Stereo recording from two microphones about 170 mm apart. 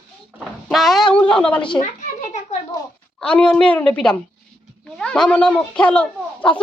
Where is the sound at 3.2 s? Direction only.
5° left (ahead or behind).